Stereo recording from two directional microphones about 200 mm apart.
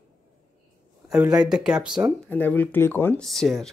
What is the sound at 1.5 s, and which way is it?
Speech, 5° right (ahead or behind).